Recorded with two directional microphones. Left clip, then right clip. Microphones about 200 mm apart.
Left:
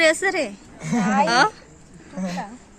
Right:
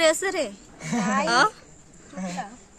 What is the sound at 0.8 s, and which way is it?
Speech, centre (ahead or behind).